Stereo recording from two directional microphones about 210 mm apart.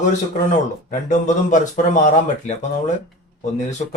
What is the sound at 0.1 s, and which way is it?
Speech, 35° left (ahead or behind).